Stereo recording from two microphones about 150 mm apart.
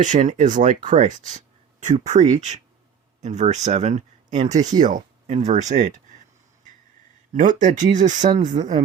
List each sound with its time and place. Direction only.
0.0 s speech: 55° right (ahead or behind)
7.3 s speech: 60° right (ahead or behind)